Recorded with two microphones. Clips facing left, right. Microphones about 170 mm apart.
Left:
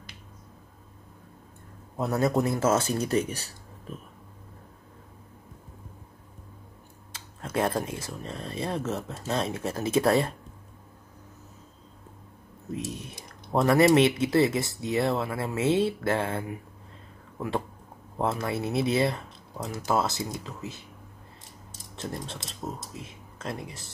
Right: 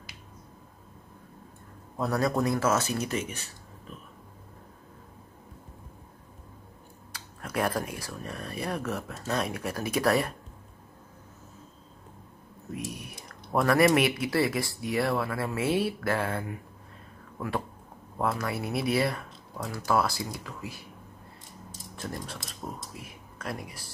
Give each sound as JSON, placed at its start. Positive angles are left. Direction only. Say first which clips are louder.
{"t": 2.0, "sound": "speech", "louder": "left 2 dB", "side_deg": 25}
{"t": 7.1, "sound": "speech", "louder": "left 2 dB", "side_deg": 25}
{"t": 12.7, "sound": "speech", "louder": "left 3 dB", "side_deg": 25}
{"t": 21.9, "sound": "speech", "louder": "left 2 dB", "side_deg": 25}